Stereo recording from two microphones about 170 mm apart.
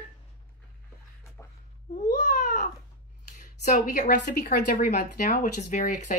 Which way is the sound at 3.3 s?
45° left (ahead or behind).